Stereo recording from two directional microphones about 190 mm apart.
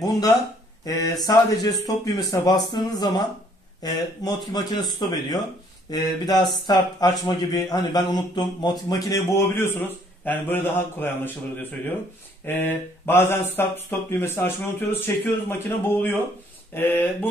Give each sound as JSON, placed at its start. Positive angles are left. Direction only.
{"t": 0.8, "sound": "speech", "side_deg": 20}